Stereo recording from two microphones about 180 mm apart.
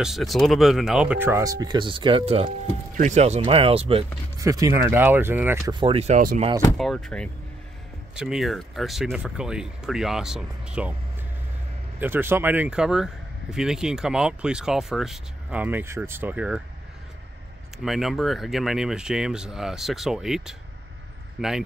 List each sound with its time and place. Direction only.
0.0 s speech: centre (ahead or behind); by 4.0 s 30° right (ahead or behind)
4.4 s speech: 20° right (ahead or behind)
5.7 s speech: 30° right (ahead or behind)
6.8 s speech: centre (ahead or behind)
12.0 s speech: 10° right (ahead or behind)
17.8 s speech: centre (ahead or behind)